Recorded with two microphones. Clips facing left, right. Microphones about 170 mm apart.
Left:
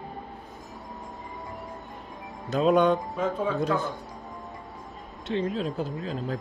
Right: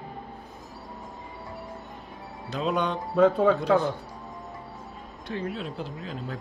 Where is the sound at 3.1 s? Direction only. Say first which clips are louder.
Right 7 dB; 65° right (ahead or behind).